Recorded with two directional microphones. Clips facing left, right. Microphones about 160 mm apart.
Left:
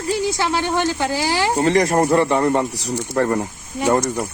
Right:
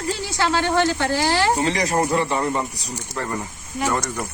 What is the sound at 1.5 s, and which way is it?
Speech, 50° left (ahead or behind).